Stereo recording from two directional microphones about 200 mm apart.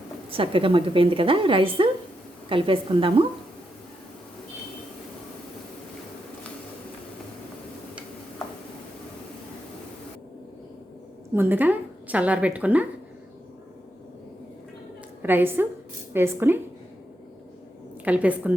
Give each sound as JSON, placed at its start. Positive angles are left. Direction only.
{"t": 0.3, "sound": "a woman's voice", "side_deg": -25}
{"t": 11.3, "sound": "a woman's voice", "side_deg": -10}
{"t": 15.2, "sound": "a woman's voice", "side_deg": -10}
{"t": 18.0, "sound": "a woman's voice", "side_deg": -5}